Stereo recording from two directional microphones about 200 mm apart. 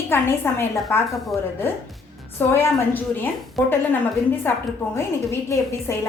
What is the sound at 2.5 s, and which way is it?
A woman's voice, 10° left (ahead or behind).